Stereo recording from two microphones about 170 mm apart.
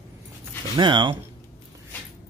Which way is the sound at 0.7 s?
25° right (ahead or behind).